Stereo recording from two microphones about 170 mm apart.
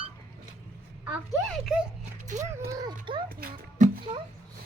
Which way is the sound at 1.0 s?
Centre (ahead or behind).